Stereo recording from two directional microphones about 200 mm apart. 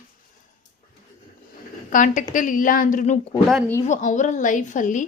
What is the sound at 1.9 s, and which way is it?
A woman's voice, 40° left (ahead or behind).